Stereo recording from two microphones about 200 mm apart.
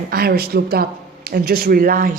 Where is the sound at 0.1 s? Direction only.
50° right (ahead or behind).